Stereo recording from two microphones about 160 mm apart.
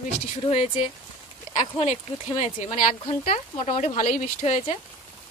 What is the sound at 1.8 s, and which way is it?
Speech, 45° left (ahead or behind).